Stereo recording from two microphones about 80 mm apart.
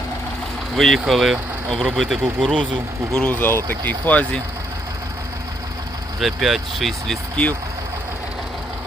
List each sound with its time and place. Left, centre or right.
0.8 s speech: centre
3.2 s speech: left
6.1 s speech: centre